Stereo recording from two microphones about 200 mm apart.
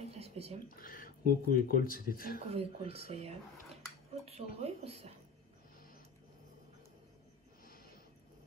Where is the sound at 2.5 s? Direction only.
30° right (ahead or behind).